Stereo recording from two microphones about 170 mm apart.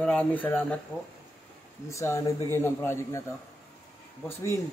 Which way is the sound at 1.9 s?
15° left (ahead or behind).